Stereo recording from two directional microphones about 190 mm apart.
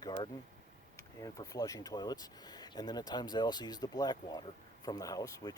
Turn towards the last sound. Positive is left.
turn(degrees=20)  # may be behind; listen again after turning